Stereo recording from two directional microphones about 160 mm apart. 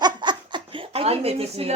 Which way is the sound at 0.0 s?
30° right (ahead or behind).